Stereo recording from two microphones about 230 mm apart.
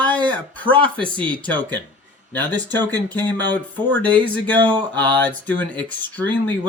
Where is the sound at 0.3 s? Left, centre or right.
Centre.